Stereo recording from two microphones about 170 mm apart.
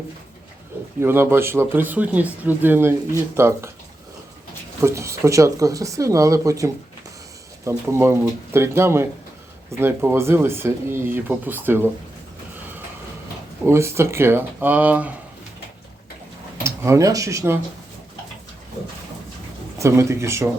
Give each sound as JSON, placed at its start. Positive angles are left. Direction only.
{"t": 0.9, "sound": "speech", "side_deg": -15}
{"t": 4.8, "sound": "speech", "side_deg": -15}
{"t": 13.7, "sound": "speech", "side_deg": -15}
{"t": 16.6, "sound": "speech", "side_deg": -15}
{"t": 19.8, "sound": "speech", "side_deg": -15}